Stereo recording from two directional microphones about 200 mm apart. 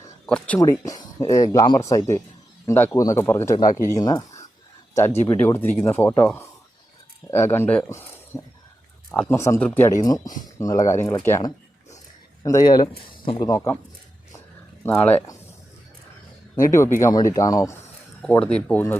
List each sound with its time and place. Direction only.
0.3 s speech: 5° left (ahead or behind)
0.6 s speech: 15° left (ahead or behind)
14.8 s speech: 10° left (ahead or behind)
16.6 s speech: 15° left (ahead or behind)
18.2 s speech: 5° left (ahead or behind)